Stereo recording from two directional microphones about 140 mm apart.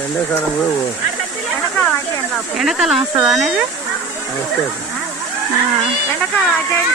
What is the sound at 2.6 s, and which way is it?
Speech, 5° right (ahead or behind).